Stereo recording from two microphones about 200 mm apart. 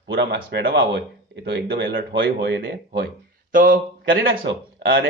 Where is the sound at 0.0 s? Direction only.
60° right (ahead or behind).